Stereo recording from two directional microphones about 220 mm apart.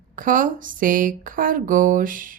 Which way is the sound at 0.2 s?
40° right (ahead or behind).